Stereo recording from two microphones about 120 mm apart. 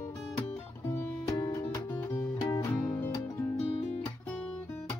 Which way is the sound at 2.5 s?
30° left (ahead or behind).